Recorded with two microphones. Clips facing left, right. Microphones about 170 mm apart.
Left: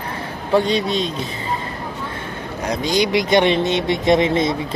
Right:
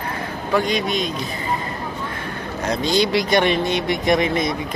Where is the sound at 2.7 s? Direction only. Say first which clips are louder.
Even; 15° left (ahead or behind).